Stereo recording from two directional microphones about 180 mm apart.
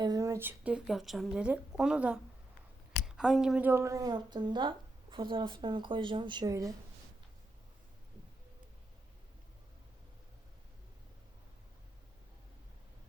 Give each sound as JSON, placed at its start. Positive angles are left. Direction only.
{"t": 0.0, "sound": "speech", "side_deg": -20}
{"t": 3.2, "sound": "speech", "side_deg": -5}